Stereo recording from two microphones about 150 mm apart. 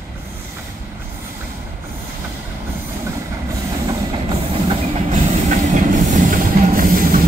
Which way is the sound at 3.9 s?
25° right (ahead or behind).